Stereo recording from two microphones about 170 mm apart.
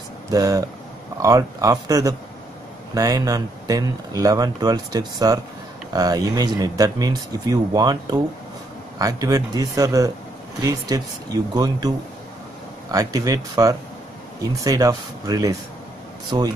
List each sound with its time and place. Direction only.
0.3 s speech: 20° right (ahead or behind)
12.9 s speech: 20° right (ahead or behind)